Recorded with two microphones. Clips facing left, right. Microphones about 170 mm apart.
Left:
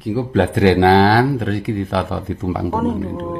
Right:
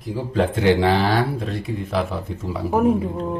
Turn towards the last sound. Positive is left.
turn(degrees=-10)  # may be behind; listen again after turning